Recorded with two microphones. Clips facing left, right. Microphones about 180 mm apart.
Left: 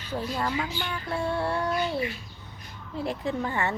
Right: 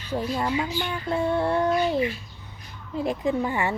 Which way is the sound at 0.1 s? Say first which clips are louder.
Right 4 dB; 15° right (ahead or behind).